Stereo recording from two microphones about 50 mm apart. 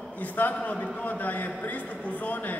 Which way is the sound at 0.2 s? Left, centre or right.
Left.